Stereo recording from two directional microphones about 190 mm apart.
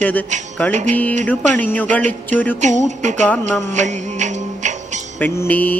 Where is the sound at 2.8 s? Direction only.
40° right (ahead or behind).